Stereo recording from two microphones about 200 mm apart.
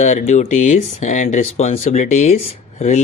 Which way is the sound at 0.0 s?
35° left (ahead or behind).